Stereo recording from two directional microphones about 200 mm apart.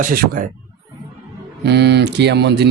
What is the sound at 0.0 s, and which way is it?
Speech, 45° right (ahead or behind).